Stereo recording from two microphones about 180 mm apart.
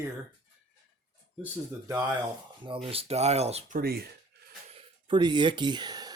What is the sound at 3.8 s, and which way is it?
Speech, 60° right (ahead or behind).